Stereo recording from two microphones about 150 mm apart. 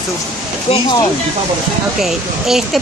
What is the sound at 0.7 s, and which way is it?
Speech, 40° left (ahead or behind).